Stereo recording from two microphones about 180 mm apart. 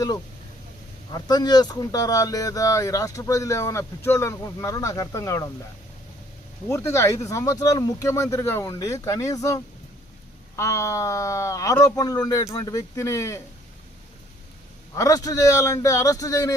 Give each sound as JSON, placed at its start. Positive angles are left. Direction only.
{"t": 1.1, "sound": "speech", "side_deg": 20}
{"t": 6.7, "sound": "speech", "side_deg": 15}
{"t": 14.9, "sound": "speech", "side_deg": 20}